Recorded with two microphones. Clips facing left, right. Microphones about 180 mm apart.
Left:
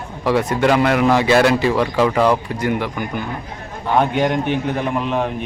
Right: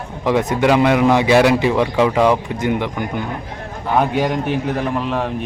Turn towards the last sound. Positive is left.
turn(degrees=0)  # may be behind; listen again after turning